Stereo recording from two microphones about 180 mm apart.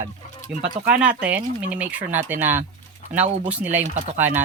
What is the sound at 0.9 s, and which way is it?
Speech, 10° right (ahead or behind).